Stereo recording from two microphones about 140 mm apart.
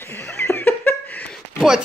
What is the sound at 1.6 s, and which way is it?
Speech, 5° right (ahead or behind).